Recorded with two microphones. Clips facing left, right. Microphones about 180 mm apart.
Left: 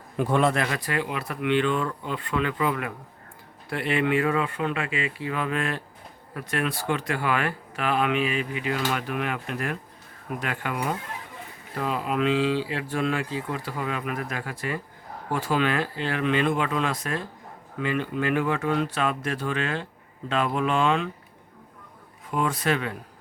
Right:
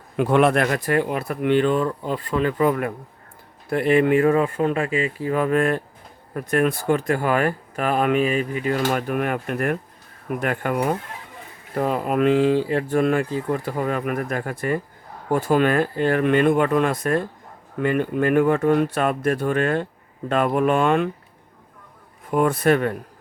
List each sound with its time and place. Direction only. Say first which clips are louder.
0.2 s speech: right 5 dB; 70° right (ahead or behind); by 21.1 s 55° right (ahead or behind)
22.3 s speech: right 7 dB; 55° right (ahead or behind)